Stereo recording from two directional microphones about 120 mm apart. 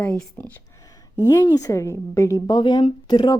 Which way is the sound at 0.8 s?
30° left (ahead or behind).